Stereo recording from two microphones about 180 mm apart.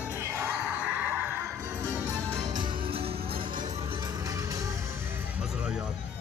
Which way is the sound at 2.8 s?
30° right (ahead or behind).